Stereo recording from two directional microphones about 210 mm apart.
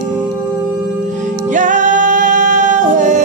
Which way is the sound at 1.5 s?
35° right (ahead or behind).